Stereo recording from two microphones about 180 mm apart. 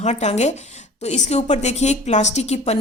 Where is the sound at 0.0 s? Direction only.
40° left (ahead or behind).